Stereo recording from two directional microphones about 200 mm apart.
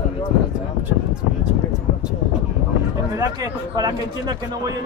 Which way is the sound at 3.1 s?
20° right (ahead or behind).